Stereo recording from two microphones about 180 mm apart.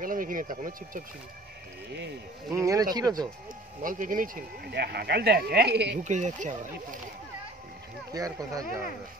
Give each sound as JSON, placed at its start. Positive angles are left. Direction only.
{"t": 0.0, "sound": "speech", "side_deg": -50}
{"t": 2.5, "sound": "speech", "side_deg": -20}
{"t": 3.8, "sound": "speech", "side_deg": -50}
{"t": 4.7, "sound": "speech", "side_deg": -60}
{"t": 6.0, "sound": "speech", "side_deg": -40}
{"t": 8.1, "sound": "speech", "side_deg": -20}